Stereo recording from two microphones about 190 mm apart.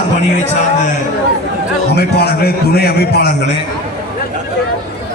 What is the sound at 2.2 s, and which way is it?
Speech, 55° left (ahead or behind).